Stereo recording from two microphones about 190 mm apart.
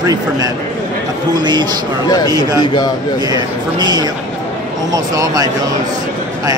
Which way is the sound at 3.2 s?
20° right (ahead or behind).